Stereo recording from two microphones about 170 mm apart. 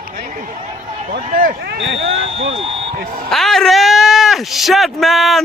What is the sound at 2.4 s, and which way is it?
Speech, 35° right (ahead or behind).